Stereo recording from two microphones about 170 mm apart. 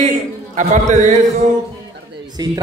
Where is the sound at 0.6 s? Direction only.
45° right (ahead or behind).